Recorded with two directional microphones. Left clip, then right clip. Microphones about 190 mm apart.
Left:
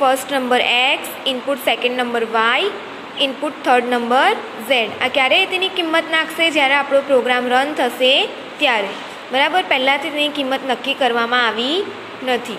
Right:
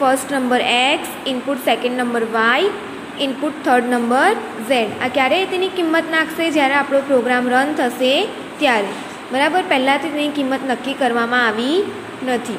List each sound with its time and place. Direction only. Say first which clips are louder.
0.0 s a woman's voice: even; 10° left (ahead or behind)